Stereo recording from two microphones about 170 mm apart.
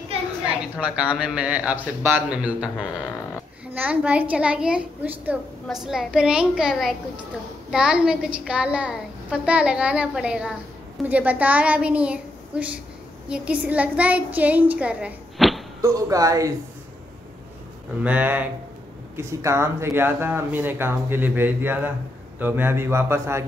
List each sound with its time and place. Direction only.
0.7 s a woman's voice: 5° right (ahead or behind)
15.8 s speech: 20° right (ahead or behind)
18.0 s a woman's voice: 10° right (ahead or behind)